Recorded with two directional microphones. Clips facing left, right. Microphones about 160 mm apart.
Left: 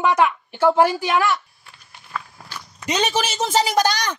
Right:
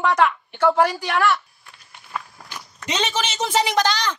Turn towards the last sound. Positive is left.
turn(degrees=10)  # may be behind; listen again after turning